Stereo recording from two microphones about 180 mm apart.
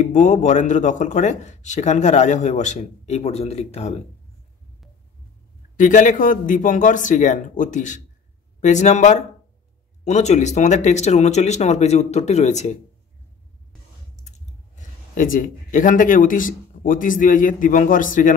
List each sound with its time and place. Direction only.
0.0 s a man's voice: 40° left (ahead or behind)
5.8 s a man's voice: 45° left (ahead or behind)
14.8 s speech: 50° left (ahead or behind)